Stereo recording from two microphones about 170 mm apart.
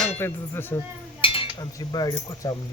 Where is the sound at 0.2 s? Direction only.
15° left (ahead or behind).